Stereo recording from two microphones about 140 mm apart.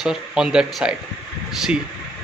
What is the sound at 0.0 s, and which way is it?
Speech, 5° right (ahead or behind).